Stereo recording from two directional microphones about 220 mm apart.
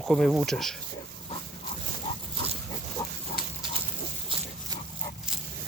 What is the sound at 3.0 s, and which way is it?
Pig, 15° left (ahead or behind).